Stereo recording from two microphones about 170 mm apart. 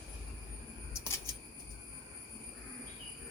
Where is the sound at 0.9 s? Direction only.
15° left (ahead or behind).